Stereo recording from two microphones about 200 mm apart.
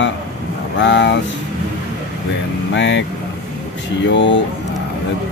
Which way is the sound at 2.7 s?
65° left (ahead or behind).